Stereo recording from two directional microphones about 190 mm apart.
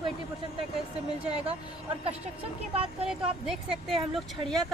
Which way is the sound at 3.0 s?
Centre (ahead or behind).